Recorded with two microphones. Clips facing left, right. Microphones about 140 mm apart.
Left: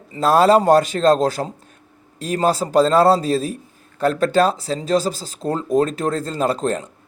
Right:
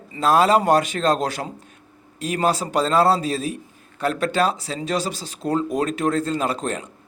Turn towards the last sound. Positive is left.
turn(degrees=35)  # may be behind; listen again after turning